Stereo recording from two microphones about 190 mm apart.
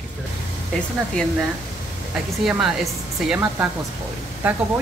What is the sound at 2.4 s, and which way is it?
A woman's voice, 5° right (ahead or behind).